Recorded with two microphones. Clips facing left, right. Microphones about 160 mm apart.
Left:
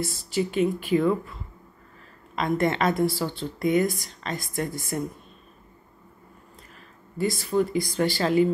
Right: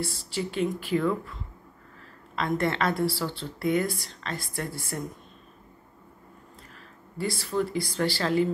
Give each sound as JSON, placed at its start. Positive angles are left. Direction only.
{"t": 0.0, "sound": "a woman's voice", "side_deg": 15}
{"t": 2.3, "sound": "a woman's voice", "side_deg": 15}
{"t": 7.2, "sound": "a woman's voice", "side_deg": 15}